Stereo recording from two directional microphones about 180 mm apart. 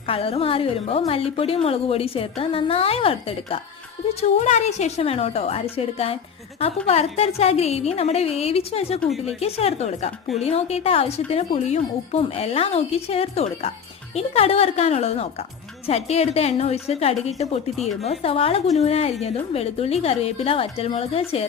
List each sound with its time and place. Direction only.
0.1 s a woman's voice: 30° left (ahead or behind)
9.0 s speech: centre (ahead or behind)
9.2 s a woman's voice: 35° left (ahead or behind)